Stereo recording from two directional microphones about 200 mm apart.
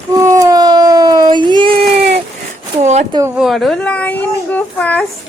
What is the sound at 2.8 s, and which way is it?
Speech, 35° right (ahead or behind).